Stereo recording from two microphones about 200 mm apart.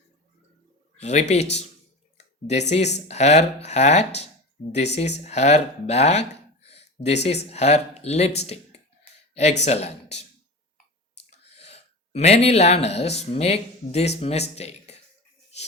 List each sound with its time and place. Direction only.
0.9 s speech: 35° left (ahead or behind)
2.1 s a sound: 35° left (ahead or behind)
3.1 s speech: 35° left (ahead or behind)
11.3 s speech: 30° left (ahead or behind)